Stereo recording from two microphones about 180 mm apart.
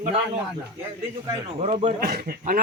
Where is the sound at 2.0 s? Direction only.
60° right (ahead or behind).